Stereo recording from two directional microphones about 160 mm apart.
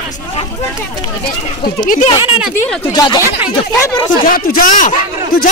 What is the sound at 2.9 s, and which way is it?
Speech, 25° left (ahead or behind).